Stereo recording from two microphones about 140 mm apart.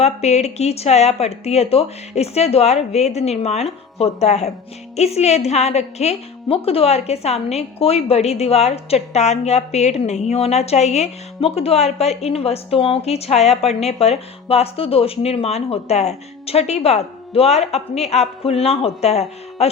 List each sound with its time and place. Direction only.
0.0 s a woman's voice: 50° left (ahead or behind)